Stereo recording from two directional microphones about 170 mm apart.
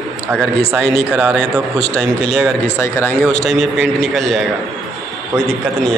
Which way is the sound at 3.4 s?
Centre (ahead or behind).